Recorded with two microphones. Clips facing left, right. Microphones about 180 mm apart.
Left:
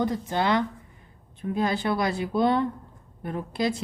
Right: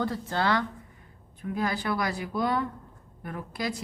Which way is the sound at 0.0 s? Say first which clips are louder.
Left 3 dB; 20° left (ahead or behind).